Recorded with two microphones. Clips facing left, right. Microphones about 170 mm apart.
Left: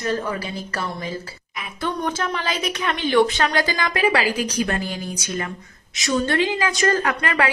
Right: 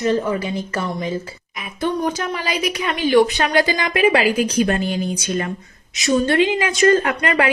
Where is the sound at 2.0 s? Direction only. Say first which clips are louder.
Right 2 dB; 10° right (ahead or behind).